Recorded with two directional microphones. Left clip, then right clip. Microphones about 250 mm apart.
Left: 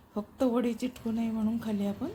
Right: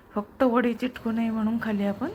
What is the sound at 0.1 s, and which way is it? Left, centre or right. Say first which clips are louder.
Speech: right 6 dB; centre.